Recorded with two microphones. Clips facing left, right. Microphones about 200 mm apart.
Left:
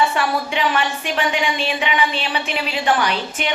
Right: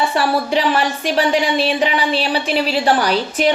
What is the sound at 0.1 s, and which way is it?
Speech, 35° right (ahead or behind).